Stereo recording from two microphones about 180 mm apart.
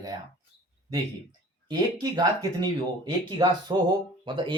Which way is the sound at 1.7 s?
20° right (ahead or behind).